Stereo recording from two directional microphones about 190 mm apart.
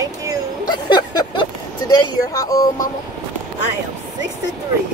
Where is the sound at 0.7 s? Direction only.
25° left (ahead or behind).